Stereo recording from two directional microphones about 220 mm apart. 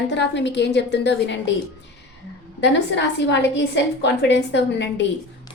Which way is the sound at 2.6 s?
50° left (ahead or behind).